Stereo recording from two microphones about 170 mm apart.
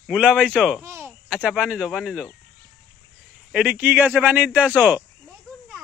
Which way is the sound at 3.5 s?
10° right (ahead or behind).